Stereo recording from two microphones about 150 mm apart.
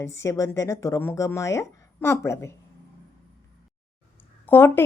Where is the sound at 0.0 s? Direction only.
20° left (ahead or behind).